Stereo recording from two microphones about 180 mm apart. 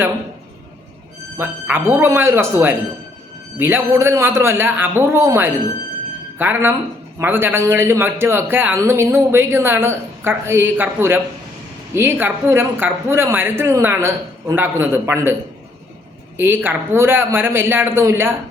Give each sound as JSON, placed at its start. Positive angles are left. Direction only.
{"t": 1.4, "sound": "a man's voice", "side_deg": -10}
{"t": 16.4, "sound": "a man's voice", "side_deg": -10}